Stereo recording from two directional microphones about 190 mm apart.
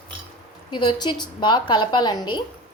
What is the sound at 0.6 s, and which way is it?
A woman's voice, 25° left (ahead or behind).